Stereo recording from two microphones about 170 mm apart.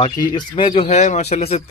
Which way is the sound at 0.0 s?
25° left (ahead or behind).